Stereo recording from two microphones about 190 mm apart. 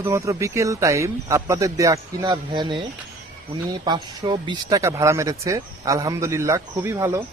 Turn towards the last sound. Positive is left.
turn(degrees=-15)  # may be behind; listen again after turning